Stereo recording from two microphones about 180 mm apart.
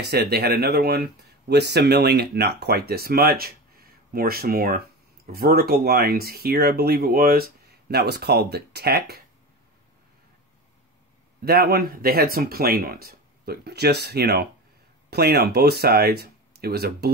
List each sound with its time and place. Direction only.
0.0 s speech: 65° right (ahead or behind)
11.4 s speech: 60° right (ahead or behind)